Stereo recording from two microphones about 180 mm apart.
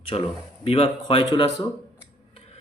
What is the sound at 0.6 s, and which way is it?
Speech, 30° left (ahead or behind).